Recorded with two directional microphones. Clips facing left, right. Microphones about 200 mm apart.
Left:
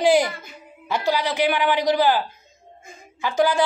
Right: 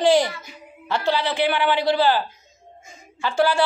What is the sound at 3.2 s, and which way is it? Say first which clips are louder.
Speech: even; 15° left (ahead or behind).